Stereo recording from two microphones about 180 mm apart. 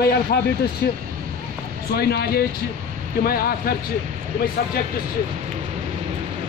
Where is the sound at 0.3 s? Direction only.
60° left (ahead or behind).